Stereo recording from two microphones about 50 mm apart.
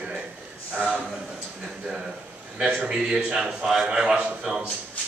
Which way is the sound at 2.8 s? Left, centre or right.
Centre.